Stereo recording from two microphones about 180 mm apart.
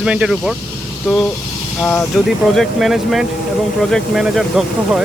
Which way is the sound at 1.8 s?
10° left (ahead or behind).